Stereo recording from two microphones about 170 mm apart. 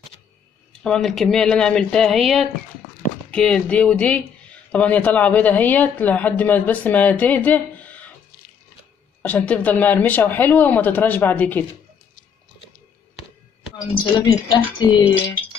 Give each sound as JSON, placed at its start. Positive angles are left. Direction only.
{"t": 0.7, "sound": "speech", "side_deg": 5}
{"t": 9.2, "sound": "speech", "side_deg": 10}
{"t": 14.1, "sound": "music", "side_deg": 25}